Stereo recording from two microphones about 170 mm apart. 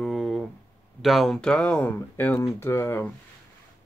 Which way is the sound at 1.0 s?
Centre (ahead or behind).